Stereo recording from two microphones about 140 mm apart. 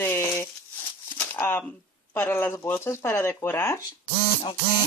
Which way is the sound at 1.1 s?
15° left (ahead or behind).